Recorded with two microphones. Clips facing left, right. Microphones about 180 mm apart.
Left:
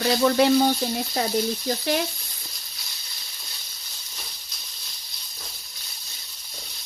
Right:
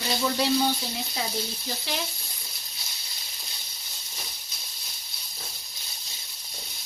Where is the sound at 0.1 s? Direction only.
60° left (ahead or behind).